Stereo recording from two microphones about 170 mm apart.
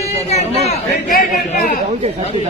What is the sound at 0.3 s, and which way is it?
Speech, 40° left (ahead or behind).